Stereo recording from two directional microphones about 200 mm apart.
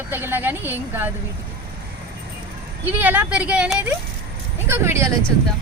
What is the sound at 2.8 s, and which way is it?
Speech, 10° right (ahead or behind).